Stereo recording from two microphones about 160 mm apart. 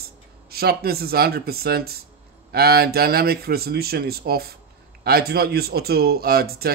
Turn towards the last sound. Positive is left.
turn(degrees=-70)  # may be behind; listen again after turning